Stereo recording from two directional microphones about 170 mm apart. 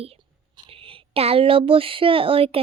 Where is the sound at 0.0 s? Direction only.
35° right (ahead or behind).